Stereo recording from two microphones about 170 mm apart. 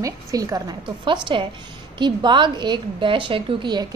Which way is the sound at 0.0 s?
20° right (ahead or behind).